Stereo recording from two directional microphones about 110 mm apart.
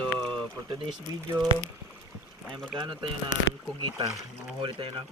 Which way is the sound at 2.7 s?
45° right (ahead or behind).